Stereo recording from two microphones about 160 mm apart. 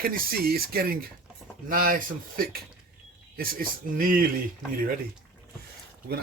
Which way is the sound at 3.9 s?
60° right (ahead or behind).